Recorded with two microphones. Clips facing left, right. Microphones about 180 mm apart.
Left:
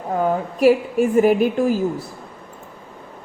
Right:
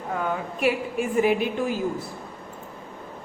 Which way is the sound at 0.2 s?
35° left (ahead or behind).